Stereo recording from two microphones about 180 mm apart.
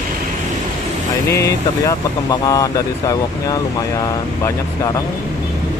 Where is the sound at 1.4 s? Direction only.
15° left (ahead or behind).